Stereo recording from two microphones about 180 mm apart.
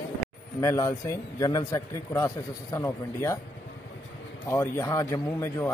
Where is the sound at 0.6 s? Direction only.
15° left (ahead or behind).